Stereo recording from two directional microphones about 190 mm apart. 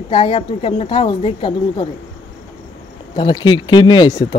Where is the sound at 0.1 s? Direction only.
30° left (ahead or behind).